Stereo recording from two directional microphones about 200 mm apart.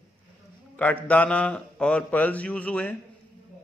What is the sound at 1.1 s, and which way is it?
A man's voice, 5° left (ahead or behind).